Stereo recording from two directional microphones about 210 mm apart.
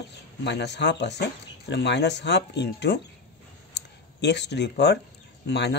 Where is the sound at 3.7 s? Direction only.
55° left (ahead or behind).